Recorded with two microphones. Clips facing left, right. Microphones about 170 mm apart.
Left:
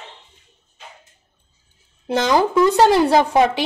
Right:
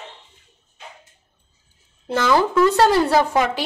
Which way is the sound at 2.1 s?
15° left (ahead or behind).